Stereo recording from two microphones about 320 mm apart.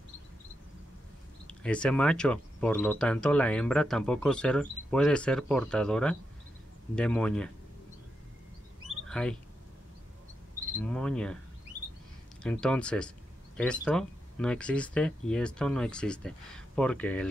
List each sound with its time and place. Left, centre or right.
1.5 s speech: centre
9.0 s speech: centre
10.8 s speech: centre
12.4 s speech: centre